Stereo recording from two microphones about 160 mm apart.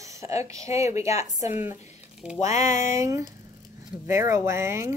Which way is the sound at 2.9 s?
20° right (ahead or behind).